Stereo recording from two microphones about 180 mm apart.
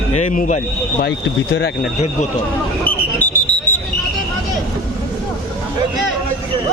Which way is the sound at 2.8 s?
10° left (ahead or behind).